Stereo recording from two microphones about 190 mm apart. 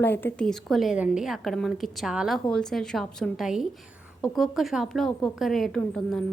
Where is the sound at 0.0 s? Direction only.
10° left (ahead or behind).